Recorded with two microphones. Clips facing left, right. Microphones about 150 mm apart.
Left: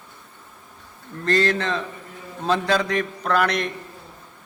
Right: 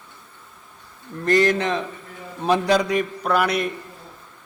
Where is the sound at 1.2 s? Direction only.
15° right (ahead or behind).